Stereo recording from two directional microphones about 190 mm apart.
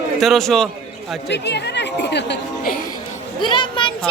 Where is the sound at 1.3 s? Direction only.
65° left (ahead or behind).